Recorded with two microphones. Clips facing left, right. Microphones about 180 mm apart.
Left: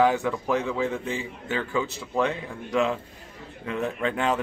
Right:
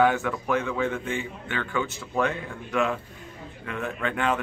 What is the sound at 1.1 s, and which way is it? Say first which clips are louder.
Speech: left 1 dB; 35° left (ahead or behind).